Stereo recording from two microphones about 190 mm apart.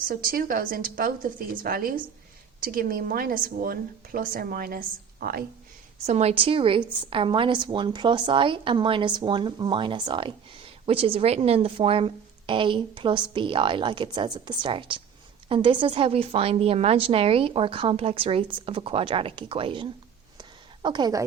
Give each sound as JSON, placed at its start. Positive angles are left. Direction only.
{"t": 0.0, "sound": "a woman's voice", "side_deg": -50}
{"t": 6.1, "sound": "a woman's voice", "side_deg": -35}
{"t": 20.4, "sound": "a sound", "side_deg": -25}